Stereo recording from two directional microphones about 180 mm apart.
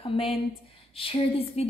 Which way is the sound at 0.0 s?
30° left (ahead or behind).